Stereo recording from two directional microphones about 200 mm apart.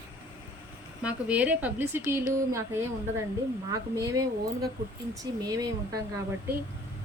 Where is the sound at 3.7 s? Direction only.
15° right (ahead or behind).